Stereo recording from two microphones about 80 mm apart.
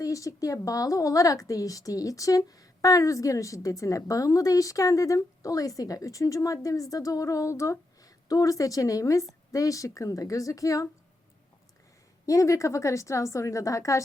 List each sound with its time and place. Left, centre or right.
0.0 s a woman's voice: left
12.2 s a woman's voice: left